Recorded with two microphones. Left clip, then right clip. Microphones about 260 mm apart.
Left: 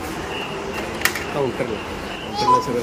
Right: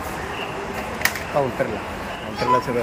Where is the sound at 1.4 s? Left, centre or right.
Centre.